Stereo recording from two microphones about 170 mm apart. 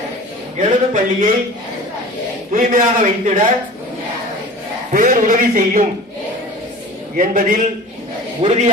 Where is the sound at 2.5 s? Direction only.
50° right (ahead or behind).